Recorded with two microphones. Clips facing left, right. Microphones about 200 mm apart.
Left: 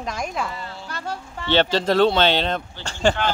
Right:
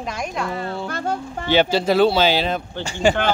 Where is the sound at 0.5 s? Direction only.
55° right (ahead or behind).